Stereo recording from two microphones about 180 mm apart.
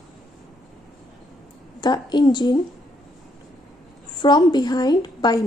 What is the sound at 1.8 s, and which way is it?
Speech, 25° left (ahead or behind).